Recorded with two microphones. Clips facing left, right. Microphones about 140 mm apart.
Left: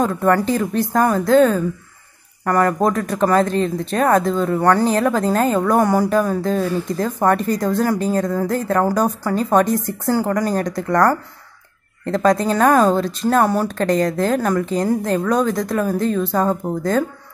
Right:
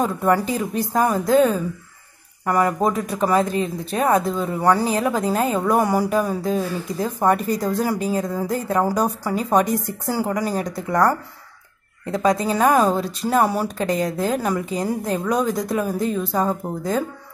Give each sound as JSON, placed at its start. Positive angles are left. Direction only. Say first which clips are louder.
{"t": 0.0, "sound": "speech", "louder": "left 3 dB", "side_deg": -10}